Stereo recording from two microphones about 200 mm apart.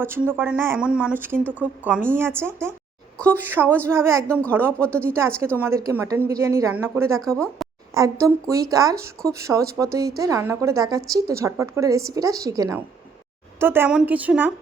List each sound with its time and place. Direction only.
0.0 s a woman's voice: 10° right (ahead or behind)
4.8 s speech: 5° left (ahead or behind)
5.0 s a woman's voice: 15° right (ahead or behind)
7.3 s speech: 5° left (ahead or behind)
7.9 s a woman's voice: 15° right (ahead or behind)